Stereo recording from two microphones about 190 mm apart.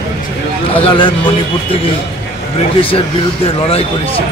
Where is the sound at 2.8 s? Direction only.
30° left (ahead or behind).